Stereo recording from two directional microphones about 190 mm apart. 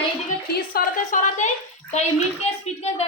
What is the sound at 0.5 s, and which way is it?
Speech, 45° left (ahead or behind).